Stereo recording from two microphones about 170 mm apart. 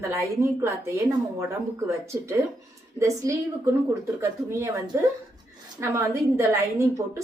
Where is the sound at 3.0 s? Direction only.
20° right (ahead or behind).